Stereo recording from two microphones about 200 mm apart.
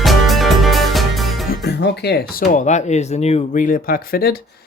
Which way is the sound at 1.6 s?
55° left (ahead or behind).